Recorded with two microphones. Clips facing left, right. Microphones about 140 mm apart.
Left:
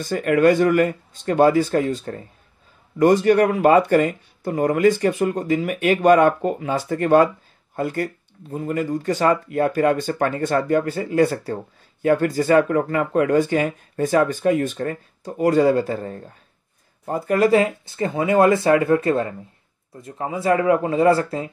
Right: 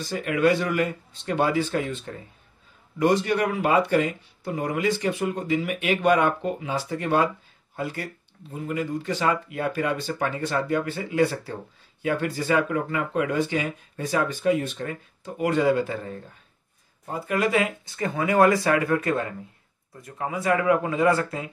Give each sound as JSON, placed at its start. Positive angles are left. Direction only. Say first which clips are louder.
{"t": 0.0, "sound": "speech", "louder": "left 6 dB", "side_deg": 50}